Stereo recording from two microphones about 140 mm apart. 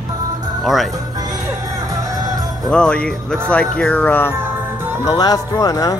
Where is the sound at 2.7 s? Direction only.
5° left (ahead or behind).